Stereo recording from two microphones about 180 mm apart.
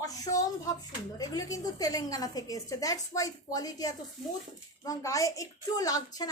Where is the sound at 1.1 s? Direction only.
20° left (ahead or behind).